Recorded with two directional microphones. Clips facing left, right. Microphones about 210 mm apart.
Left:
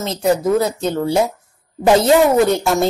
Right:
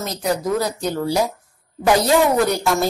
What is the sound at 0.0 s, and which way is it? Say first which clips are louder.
Speech: left 5 dB; 25° left (ahead or behind).